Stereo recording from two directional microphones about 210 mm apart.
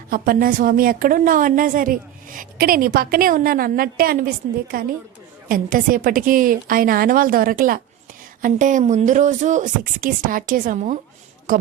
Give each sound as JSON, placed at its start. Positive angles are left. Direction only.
{"t": 0.1, "sound": "a woman's voice", "side_deg": -45}